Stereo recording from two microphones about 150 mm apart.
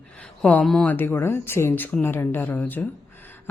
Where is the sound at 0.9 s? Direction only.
15° left (ahead or behind).